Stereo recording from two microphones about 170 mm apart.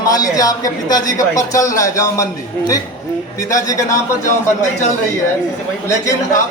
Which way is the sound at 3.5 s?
20° left (ahead or behind).